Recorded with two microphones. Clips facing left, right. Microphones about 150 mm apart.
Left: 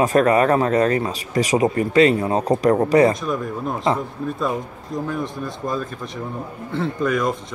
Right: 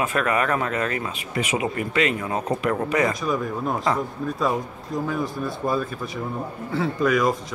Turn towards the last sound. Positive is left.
turn(degrees=0)  # may be behind; listen again after turning